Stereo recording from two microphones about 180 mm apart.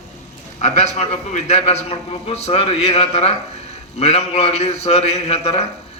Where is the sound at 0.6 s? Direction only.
40° left (ahead or behind).